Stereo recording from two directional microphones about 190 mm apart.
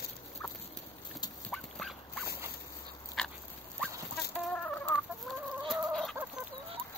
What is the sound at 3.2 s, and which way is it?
Dog, centre (ahead or behind).